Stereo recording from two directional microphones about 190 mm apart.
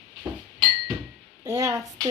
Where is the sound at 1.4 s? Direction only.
15° right (ahead or behind).